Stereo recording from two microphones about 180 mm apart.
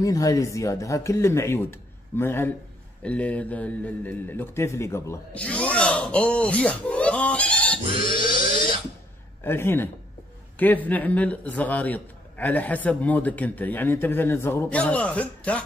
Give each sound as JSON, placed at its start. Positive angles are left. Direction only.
{"t": 0.0, "sound": "a man's voice", "side_deg": 20}
{"t": 9.4, "sound": "a man's voice", "side_deg": 15}